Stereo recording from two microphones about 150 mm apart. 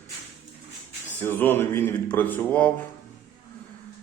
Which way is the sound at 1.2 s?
15° left (ahead or behind).